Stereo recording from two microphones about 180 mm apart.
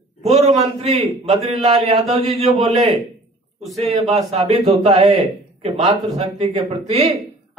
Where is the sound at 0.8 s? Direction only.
35° right (ahead or behind).